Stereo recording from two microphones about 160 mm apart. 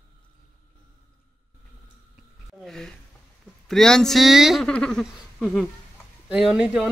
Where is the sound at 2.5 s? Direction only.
Centre (ahead or behind).